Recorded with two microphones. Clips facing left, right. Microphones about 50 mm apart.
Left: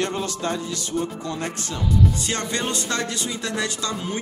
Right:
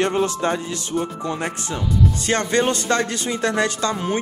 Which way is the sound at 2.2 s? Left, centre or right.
Right.